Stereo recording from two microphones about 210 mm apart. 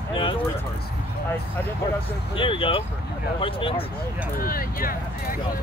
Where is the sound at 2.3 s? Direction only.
25° left (ahead or behind).